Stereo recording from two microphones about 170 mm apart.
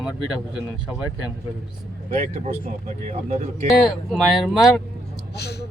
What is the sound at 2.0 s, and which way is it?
Speech, 45° right (ahead or behind).